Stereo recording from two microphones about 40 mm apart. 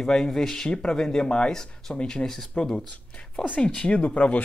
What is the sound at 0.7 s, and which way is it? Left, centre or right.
Speech, left.